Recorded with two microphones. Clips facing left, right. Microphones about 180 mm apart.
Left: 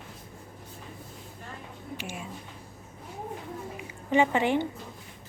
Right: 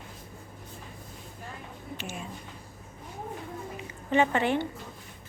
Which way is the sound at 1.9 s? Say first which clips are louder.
Even; 10° left (ahead or behind).